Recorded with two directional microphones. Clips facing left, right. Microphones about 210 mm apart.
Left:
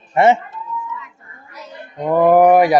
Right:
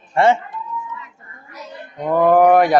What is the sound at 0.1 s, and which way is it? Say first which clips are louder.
Speech: left 2 dB; 20° left (ahead or behind).